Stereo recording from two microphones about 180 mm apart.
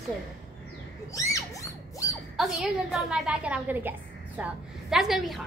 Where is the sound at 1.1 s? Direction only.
15° left (ahead or behind).